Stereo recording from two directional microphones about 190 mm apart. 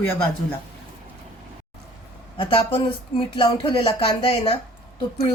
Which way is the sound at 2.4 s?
25° left (ahead or behind).